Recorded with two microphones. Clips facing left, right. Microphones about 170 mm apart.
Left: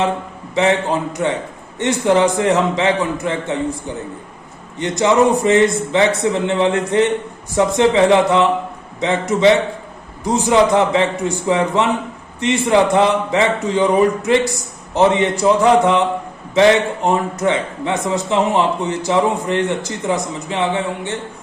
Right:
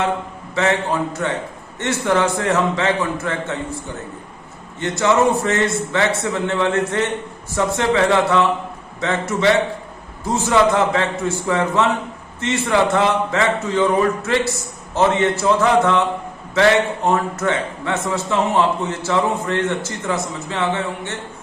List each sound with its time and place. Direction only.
0.5 s a man's voice: 20° left (ahead or behind)